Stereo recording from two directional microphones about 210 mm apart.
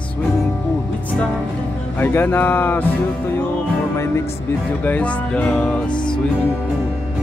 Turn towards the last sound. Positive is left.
turn(degrees=20)  # may be behind; listen again after turning